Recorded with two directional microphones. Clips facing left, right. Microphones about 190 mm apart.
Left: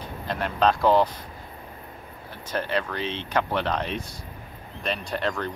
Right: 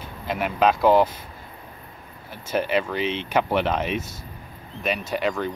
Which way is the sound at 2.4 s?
10° right (ahead or behind).